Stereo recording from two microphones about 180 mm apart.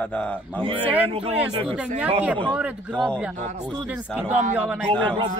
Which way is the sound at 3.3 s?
40° right (ahead or behind).